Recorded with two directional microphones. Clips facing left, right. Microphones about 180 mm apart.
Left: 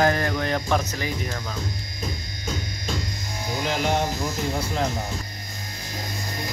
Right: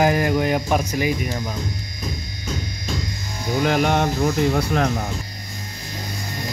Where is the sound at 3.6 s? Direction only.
60° right (ahead or behind).